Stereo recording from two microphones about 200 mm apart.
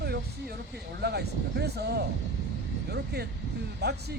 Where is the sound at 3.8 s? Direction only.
55° right (ahead or behind).